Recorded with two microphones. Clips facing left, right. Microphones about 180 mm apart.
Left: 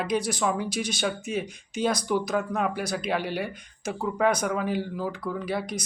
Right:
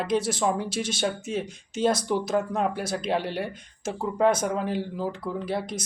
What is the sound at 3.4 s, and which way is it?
Speech, 25° right (ahead or behind).